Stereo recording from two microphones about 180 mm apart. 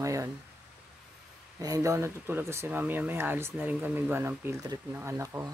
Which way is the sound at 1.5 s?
20° right (ahead or behind).